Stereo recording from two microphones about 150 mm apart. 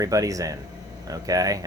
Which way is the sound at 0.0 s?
20° right (ahead or behind).